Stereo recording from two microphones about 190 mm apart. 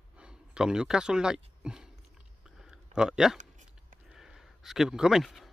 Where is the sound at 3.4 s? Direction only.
40° right (ahead or behind).